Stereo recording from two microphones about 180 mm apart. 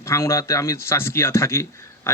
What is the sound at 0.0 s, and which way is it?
Speech, 15° left (ahead or behind).